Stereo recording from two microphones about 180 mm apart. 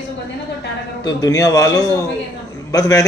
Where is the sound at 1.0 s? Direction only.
20° left (ahead or behind).